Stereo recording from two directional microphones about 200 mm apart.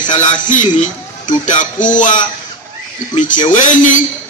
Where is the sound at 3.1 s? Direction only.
40° left (ahead or behind).